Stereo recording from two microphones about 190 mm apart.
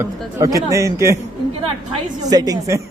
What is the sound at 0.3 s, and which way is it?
Speech, 20° right (ahead or behind).